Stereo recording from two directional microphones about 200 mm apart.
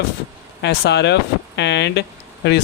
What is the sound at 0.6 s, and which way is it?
Speech, 60° left (ahead or behind).